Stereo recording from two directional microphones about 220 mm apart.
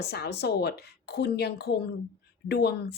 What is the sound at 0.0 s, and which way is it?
Speech, 45° left (ahead or behind).